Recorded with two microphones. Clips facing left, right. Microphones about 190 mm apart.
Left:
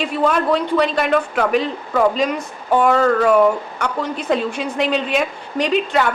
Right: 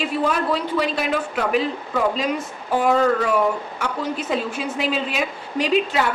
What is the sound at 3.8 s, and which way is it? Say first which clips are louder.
A woman's voice: left 2 dB; 5° right (ahead or behind).